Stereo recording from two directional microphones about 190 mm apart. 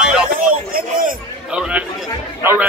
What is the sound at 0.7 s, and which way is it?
Speech, 45° right (ahead or behind).